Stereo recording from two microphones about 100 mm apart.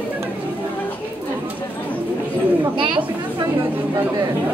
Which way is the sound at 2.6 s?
50° right (ahead or behind).